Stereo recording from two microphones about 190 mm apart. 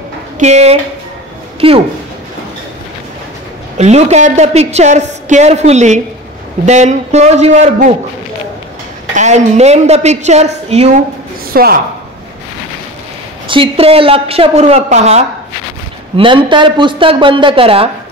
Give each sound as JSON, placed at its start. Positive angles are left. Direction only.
{"t": 0.4, "sound": "a woman's voice", "side_deg": -35}
{"t": 3.7, "sound": "a woman's voice", "side_deg": -35}
{"t": 9.1, "sound": "a woman's voice", "side_deg": -40}
{"t": 11.5, "sound": "speech", "side_deg": -55}
{"t": 13.5, "sound": "a woman's voice", "side_deg": -30}
{"t": 16.2, "sound": "speech", "side_deg": -25}